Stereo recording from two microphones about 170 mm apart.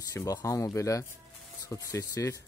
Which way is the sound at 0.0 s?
20° left (ahead or behind).